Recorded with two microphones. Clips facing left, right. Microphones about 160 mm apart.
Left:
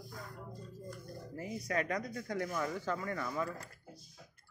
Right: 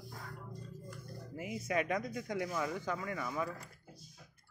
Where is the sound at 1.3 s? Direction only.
20° right (ahead or behind).